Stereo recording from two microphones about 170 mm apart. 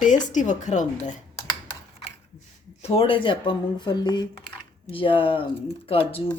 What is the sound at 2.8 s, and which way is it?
Speech, 35° left (ahead or behind).